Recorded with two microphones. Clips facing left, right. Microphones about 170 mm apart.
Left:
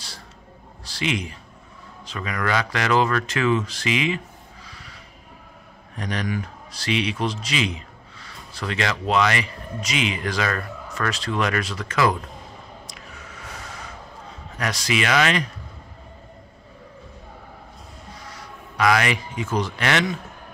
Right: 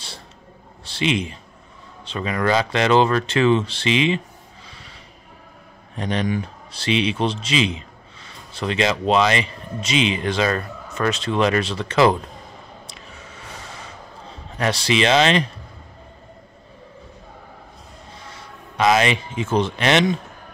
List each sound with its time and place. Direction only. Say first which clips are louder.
0.8 s speech: right 4 dB; 25° right (ahead or behind)
4.6 s snort: even; 25° right (ahead or behind)
5.9 s a man's voice: right 4 dB; 25° right (ahead or behind)
12.8 s a sound: right 1 dB; 25° right (ahead or behind)
14.6 s speech: right 5 dB; 30° right (ahead or behind)
18.3 s speech: even; 25° right (ahead or behind)